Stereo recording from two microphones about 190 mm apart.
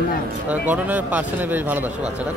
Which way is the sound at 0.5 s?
10° right (ahead or behind).